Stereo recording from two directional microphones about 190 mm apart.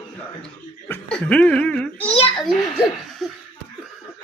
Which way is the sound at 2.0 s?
30° left (ahead or behind).